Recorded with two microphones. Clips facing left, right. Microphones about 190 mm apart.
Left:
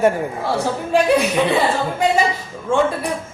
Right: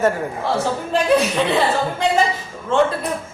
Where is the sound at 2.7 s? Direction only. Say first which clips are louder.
Right 1 dB; 10° left (ahead or behind).